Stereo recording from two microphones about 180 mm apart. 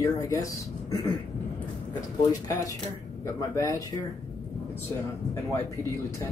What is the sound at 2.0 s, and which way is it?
Speech, 20° left (ahead or behind).